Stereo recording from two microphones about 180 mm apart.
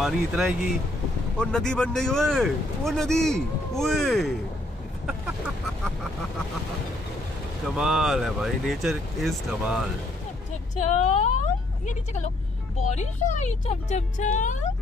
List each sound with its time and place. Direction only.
0.0 s speech: centre (ahead or behind)
7.7 s speech: 5° right (ahead or behind)
10.8 s speech: 40° left (ahead or behind)